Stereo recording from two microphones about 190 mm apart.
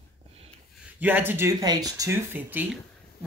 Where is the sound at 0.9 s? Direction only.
10° right (ahead or behind).